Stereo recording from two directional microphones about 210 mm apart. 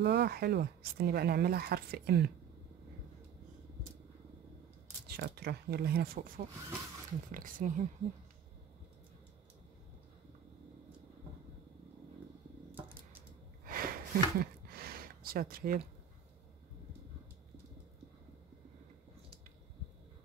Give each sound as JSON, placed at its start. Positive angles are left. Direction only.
{"t": 0.0, "sound": "speech", "side_deg": -55}
{"t": 5.0, "sound": "speech", "side_deg": -50}
{"t": 13.7, "sound": "a sound", "side_deg": -45}